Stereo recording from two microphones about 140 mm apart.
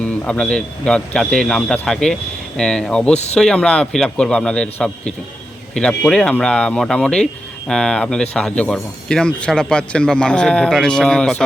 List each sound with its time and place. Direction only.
0.0 s speech: 10° left (ahead or behind)